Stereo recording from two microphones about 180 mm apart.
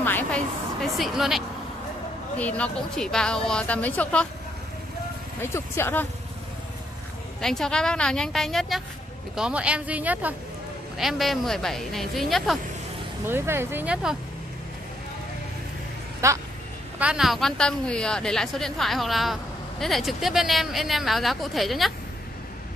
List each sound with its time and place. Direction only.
0.0 s a sound: 10° left (ahead or behind)
0.9 s a woman's voice: centre (ahead or behind)
5.4 s speech: 15° left (ahead or behind)
7.4 s a woman's voice: 5° left (ahead or behind)
13.3 s speech: 10° right (ahead or behind)
16.2 s speech: 15° right (ahead or behind)
17.0 s a woman's voice: 5° right (ahead or behind)